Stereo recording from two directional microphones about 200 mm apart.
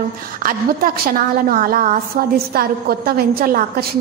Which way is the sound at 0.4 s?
45° right (ahead or behind).